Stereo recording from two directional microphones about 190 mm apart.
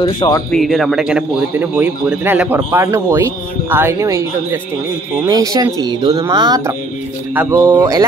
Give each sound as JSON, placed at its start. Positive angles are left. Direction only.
{"t": 0.0, "sound": "speech", "side_deg": 25}
{"t": 0.5, "sound": "a man's voice", "side_deg": 0}